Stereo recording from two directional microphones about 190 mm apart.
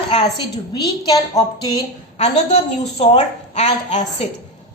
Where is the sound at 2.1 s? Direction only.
35° left (ahead or behind).